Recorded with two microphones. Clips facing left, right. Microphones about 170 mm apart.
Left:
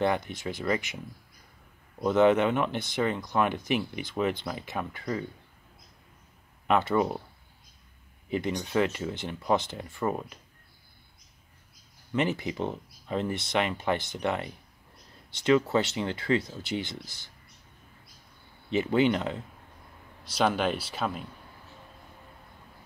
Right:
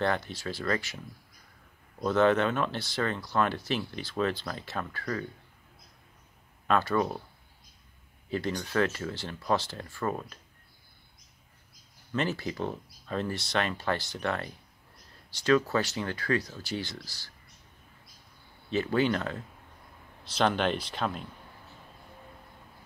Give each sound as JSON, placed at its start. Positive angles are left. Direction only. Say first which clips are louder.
{"t": 0.0, "sound": "speech", "louder": "left 2 dB", "side_deg": 15}
{"t": 2.0, "sound": "speech", "louder": "left 2 dB", "side_deg": 15}
{"t": 6.7, "sound": "speech", "louder": "left 2 dB", "side_deg": 20}
{"t": 8.3, "sound": "speech", "louder": "left 2 dB", "side_deg": 20}
{"t": 12.1, "sound": "speech", "louder": "left 3 dB", "side_deg": 15}
{"t": 18.7, "sound": "speech", "louder": "left 3 dB", "side_deg": 20}